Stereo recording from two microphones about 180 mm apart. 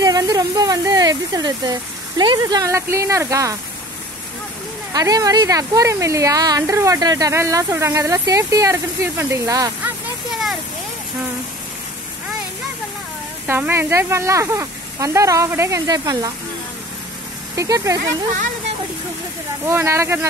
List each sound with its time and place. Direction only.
0.0 s speech: 20° right (ahead or behind)
4.9 s speech: 20° right (ahead or behind)
13.5 s speech: 10° right (ahead or behind)
17.6 s speech: 20° right (ahead or behind)
19.7 s speech: 15° right (ahead or behind)